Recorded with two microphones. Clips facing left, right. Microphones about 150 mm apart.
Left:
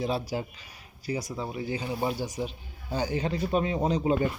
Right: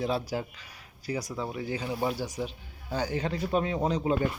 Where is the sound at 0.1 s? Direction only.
10° left (ahead or behind).